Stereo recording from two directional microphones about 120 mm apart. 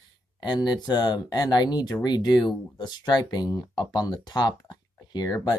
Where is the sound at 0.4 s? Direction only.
40° left (ahead or behind).